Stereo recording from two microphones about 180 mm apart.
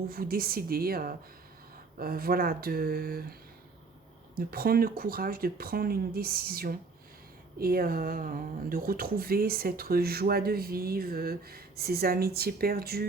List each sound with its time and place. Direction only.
0.1 s speech: 55° right (ahead or behind)
4.4 s speech: 55° right (ahead or behind)